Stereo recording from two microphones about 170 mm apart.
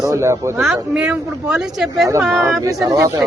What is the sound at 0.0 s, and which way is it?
Speech, 20° right (ahead or behind).